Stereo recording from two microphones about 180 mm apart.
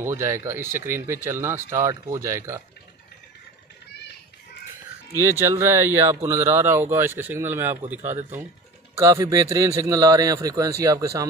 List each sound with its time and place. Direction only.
0.0 s speech: 15° right (ahead or behind)
5.4 s speech: 15° right (ahead or behind)
8.9 s a man's voice: 20° right (ahead or behind)